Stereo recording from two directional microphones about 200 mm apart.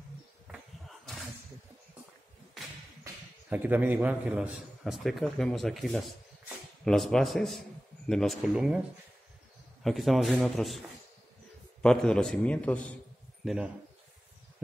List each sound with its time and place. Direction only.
0.5 s a sound: centre (ahead or behind)
3.0 s a man's voice: 10° right (ahead or behind)
9.8 s a man's voice: centre (ahead or behind)
11.8 s a man's voice: 5° left (ahead or behind)